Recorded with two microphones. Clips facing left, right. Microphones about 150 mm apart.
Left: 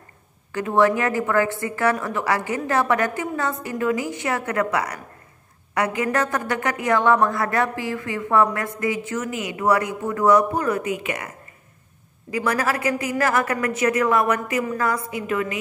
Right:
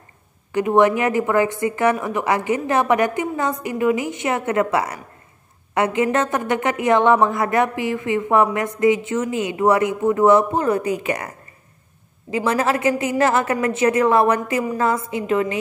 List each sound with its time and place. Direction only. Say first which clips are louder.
0.5 s a woman's voice: right 3 dB; 20° right (ahead or behind); by 11.2 s 35° right (ahead or behind)
12.3 s a woman's voice: right 3 dB; 25° right (ahead or behind)